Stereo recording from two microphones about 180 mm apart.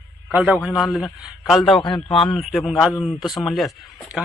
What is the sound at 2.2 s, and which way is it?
A man's voice, centre (ahead or behind).